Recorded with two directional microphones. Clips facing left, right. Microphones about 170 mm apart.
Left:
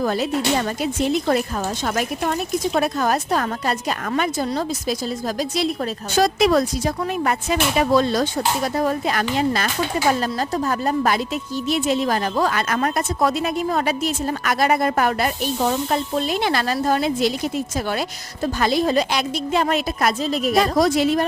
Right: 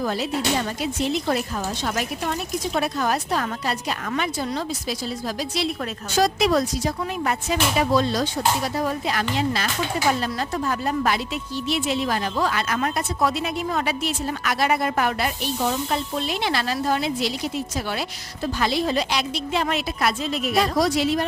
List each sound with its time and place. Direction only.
0.0 s a woman's voice: 50° left (ahead or behind)